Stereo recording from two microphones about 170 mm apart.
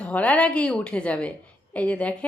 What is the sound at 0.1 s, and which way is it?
A woman's voice, 10° left (ahead or behind).